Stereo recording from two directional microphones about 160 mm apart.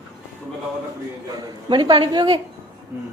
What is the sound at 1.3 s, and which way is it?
A woman's voice, 30° right (ahead or behind).